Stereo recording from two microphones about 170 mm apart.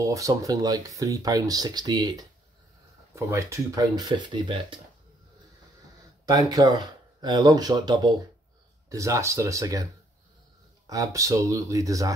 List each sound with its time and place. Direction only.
0.0 s speech: 20° right (ahead or behind)
6.2 s speech: 25° right (ahead or behind)
10.9 s speech: 20° right (ahead or behind)